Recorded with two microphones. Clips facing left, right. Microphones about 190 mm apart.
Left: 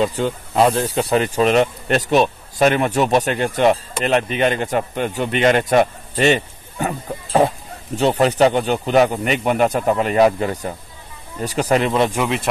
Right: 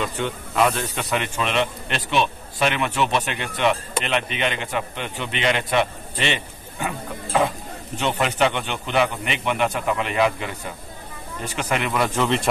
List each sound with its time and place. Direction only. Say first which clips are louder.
0.0 s speech: left 7 dB; 35° left (ahead or behind)
11.9 s speech: left 5 dB; 25° left (ahead or behind)
12.2 s speech: left 1 dB; 5° left (ahead or behind)